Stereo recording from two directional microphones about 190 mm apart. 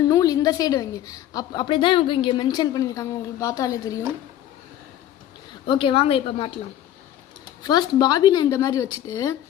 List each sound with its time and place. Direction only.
0.0 s a woman's voice: 20° left (ahead or behind)
5.6 s a woman's voice: 25° left (ahead or behind)
7.6 s a woman's voice: 20° left (ahead or behind)